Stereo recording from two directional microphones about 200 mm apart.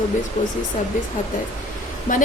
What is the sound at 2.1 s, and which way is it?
Speech, 40° left (ahead or behind).